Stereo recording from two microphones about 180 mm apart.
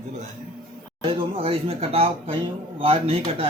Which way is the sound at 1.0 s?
30° right (ahead or behind).